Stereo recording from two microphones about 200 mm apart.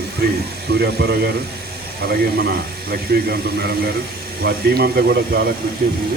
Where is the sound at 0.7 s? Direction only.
55° right (ahead or behind).